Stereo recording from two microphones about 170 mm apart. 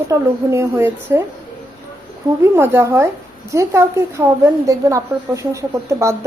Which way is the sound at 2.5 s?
15° right (ahead or behind).